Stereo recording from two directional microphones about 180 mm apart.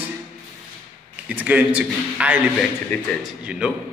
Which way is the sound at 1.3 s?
10° right (ahead or behind).